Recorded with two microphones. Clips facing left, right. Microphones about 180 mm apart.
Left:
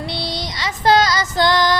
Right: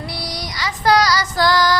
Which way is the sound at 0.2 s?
25° left (ahead or behind).